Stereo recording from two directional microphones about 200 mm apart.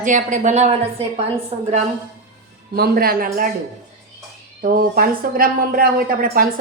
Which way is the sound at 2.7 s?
50° right (ahead or behind).